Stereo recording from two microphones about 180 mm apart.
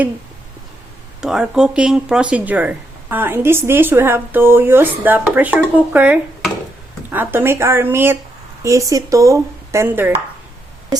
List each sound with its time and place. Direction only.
1.2 s speech: 5° right (ahead or behind)